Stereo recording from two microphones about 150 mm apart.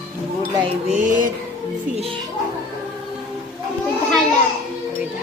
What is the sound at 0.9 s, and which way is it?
Mantra, 55° right (ahead or behind).